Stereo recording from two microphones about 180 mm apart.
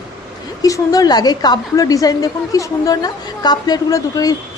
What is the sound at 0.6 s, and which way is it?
Speech, 20° left (ahead or behind).